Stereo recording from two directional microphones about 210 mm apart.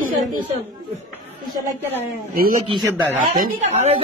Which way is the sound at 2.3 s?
45° right (ahead or behind).